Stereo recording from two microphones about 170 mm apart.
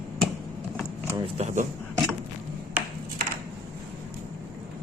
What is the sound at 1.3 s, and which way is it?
Speech, 45° right (ahead or behind).